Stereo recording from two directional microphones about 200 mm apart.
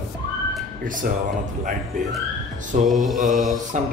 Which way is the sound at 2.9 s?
Centre (ahead or behind).